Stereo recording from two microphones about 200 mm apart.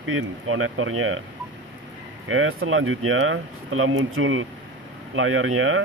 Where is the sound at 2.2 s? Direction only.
90° right.